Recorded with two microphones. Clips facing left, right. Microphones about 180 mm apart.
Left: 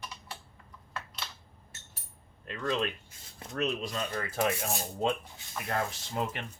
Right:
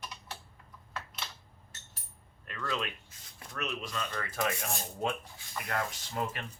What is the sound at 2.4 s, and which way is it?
Speech, 25° left (ahead or behind).